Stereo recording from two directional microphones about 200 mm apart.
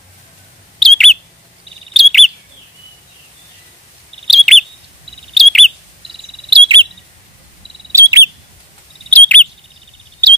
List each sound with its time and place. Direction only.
0.7 s bird: centre (ahead or behind)
2.0 s chirp: centre (ahead or behind)
4.3 s chirp: centre (ahead or behind)
6.0 s bird: 25° right (ahead or behind)
7.9 s bird: 15° right (ahead or behind)
9.1 s chirp: 5° left (ahead or behind)